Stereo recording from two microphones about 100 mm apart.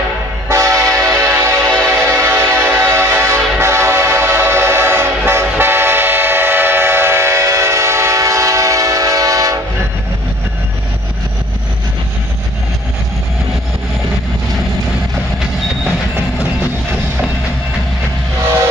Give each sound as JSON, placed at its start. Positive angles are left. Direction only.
{"t": 0.5, "sound": "train", "side_deg": -30}